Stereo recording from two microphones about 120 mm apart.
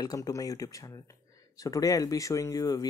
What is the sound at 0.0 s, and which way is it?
Speech, 30° left (ahead or behind).